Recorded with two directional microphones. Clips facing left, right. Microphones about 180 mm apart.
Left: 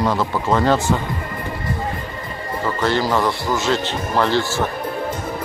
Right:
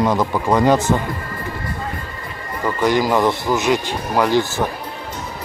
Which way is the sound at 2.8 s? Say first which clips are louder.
Right 3 dB; 15° right (ahead or behind).